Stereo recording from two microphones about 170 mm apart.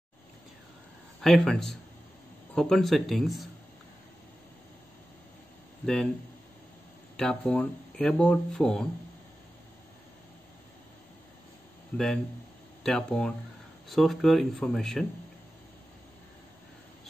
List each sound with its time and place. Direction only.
1.2 s speech: centre (ahead or behind)
7.2 s speech: 5° left (ahead or behind)
11.9 s speech: 10° left (ahead or behind)